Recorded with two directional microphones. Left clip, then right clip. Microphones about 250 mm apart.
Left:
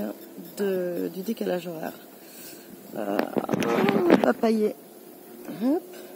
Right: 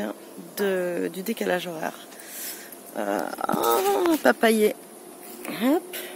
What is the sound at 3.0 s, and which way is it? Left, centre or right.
Speech, centre.